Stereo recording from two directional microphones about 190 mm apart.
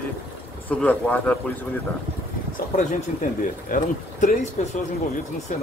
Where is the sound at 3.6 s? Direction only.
45° left (ahead or behind).